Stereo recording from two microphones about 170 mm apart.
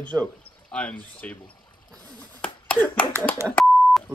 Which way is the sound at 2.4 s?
5° left (ahead or behind).